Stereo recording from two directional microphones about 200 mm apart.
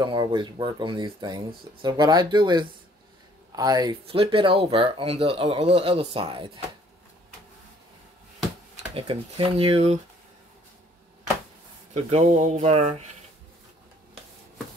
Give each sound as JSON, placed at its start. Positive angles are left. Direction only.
{"t": 0.0, "sound": "speech", "side_deg": -25}
{"t": 8.9, "sound": "speech", "side_deg": -25}
{"t": 11.9, "sound": "speech", "side_deg": -35}